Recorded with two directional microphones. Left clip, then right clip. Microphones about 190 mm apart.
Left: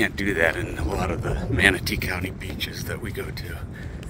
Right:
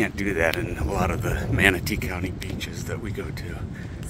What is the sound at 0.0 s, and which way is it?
Speech, 5° right (ahead or behind).